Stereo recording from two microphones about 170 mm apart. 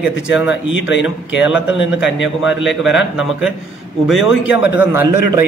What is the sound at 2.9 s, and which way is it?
A man's voice, 5° right (ahead or behind).